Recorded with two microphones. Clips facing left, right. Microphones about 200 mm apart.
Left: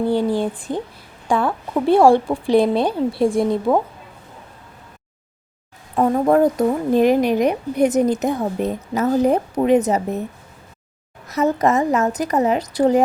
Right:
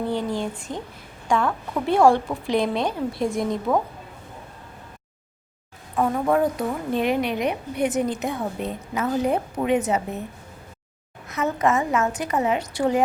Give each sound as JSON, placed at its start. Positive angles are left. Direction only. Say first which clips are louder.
{"t": 0.1, "sound": "a woman's voice", "louder": "left 7 dB", "side_deg": 30}
{"t": 6.0, "sound": "a woman's voice", "louder": "left 6 dB", "side_deg": 40}
{"t": 11.3, "sound": "a woman's voice", "louder": "left 5 dB", "side_deg": 40}